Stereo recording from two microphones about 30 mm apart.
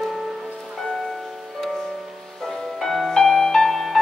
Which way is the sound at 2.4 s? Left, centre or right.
Centre.